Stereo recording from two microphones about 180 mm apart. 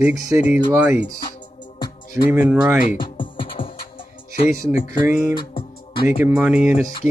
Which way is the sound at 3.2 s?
30° left (ahead or behind).